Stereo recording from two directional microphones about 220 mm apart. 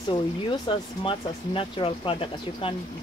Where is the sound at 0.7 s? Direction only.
25° left (ahead or behind).